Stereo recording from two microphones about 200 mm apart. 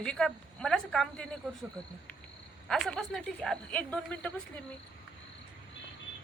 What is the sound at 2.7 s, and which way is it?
Speech, centre (ahead or behind).